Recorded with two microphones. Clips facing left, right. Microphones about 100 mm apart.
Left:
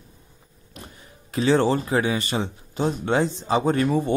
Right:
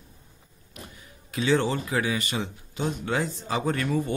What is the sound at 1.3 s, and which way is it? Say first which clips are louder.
A man's voice: left 5 dB; 35° left (ahead or behind).